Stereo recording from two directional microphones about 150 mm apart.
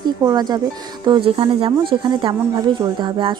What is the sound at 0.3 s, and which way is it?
Speech, 25° right (ahead or behind).